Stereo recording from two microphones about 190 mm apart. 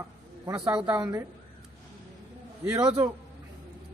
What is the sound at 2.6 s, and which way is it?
Speech, 15° right (ahead or behind).